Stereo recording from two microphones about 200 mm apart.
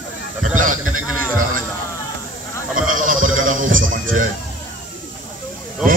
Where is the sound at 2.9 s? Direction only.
40° right (ahead or behind).